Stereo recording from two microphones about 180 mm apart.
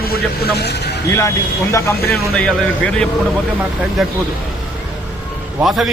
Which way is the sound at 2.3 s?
5° left (ahead or behind).